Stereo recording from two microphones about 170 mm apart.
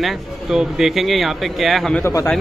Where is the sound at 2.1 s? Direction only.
15° left (ahead or behind).